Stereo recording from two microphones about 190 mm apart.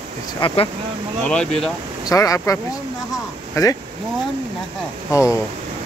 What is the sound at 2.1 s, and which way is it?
Speech, 15° left (ahead or behind).